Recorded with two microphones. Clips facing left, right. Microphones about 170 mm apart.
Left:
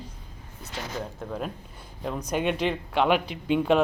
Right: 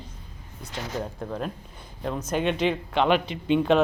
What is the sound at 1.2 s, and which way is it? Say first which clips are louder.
Speech: right 1 dB; 5° left (ahead or behind).